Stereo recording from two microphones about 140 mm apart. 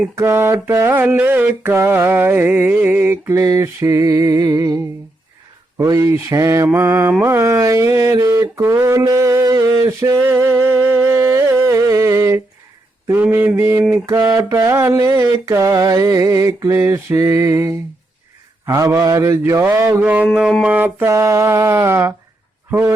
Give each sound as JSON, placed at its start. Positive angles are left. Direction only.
{"t": 0.2, "sound": "mantra", "side_deg": -15}
{"t": 7.1, "sound": "a sound", "side_deg": -15}
{"t": 13.1, "sound": "mantra", "side_deg": -15}